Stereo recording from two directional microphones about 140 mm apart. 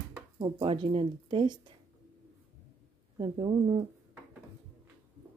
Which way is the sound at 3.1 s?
35° right (ahead or behind).